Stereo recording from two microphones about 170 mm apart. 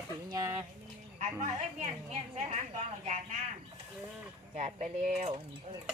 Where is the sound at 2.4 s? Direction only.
40° right (ahead or behind).